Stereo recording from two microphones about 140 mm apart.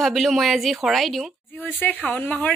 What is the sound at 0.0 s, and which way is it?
Speech, centre (ahead or behind).